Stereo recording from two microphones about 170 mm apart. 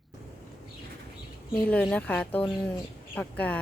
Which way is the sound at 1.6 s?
5° left (ahead or behind).